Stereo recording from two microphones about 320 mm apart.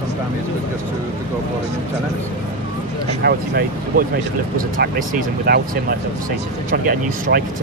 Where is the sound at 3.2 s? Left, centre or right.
Right.